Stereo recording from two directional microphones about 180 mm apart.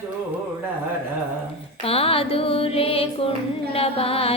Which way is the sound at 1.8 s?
35° left (ahead or behind).